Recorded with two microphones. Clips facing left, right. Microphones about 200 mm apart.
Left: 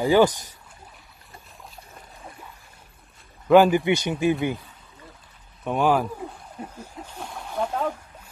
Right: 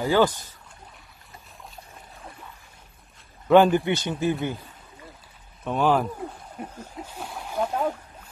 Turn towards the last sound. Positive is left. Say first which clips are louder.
# even
turn(degrees=-5)  # may be behind; listen again after turning